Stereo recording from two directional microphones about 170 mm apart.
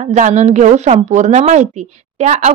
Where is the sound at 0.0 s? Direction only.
45° right (ahead or behind).